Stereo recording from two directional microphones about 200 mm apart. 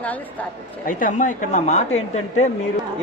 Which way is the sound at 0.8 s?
40° left (ahead or behind).